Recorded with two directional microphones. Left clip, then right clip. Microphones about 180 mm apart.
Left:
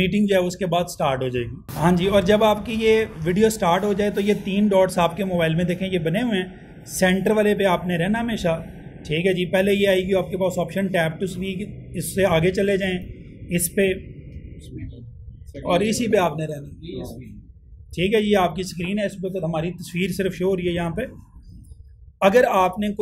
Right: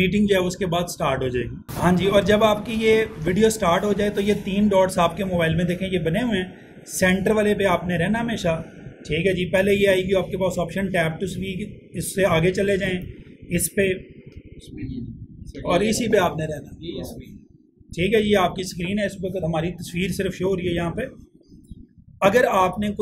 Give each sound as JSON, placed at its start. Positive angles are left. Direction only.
{"t": 0.0, "sound": "speech", "side_deg": 35}
{"t": 15.7, "sound": "speech", "side_deg": 35}
{"t": 17.9, "sound": "speech", "side_deg": 35}
{"t": 22.2, "sound": "speech", "side_deg": 35}